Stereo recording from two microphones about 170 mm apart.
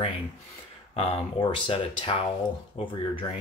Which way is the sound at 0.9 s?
35° left (ahead or behind).